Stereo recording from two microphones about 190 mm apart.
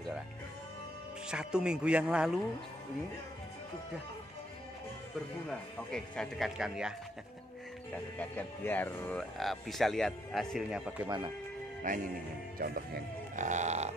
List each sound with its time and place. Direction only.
1.3 s speech: 5° right (ahead or behind)
5.5 s speech: 5° left (ahead or behind)
8.2 s speech: 10° left (ahead or behind)
11.1 s speech: 20° right (ahead or behind)
11.9 s music: 45° right (ahead or behind)